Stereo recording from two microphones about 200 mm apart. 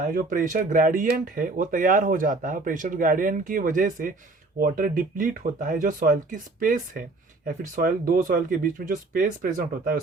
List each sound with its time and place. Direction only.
0.1 s speech: 45° right (ahead or behind)